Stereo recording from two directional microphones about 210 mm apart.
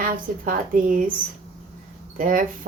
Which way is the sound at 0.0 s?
40° right (ahead or behind).